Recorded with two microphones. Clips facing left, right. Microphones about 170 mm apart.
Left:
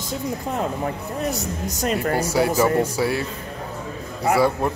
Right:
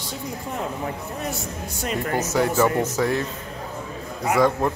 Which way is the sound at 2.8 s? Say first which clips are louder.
Even; 10° left (ahead or behind).